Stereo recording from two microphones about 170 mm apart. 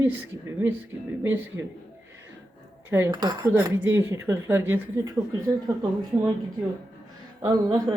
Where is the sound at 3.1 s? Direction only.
25° right (ahead or behind).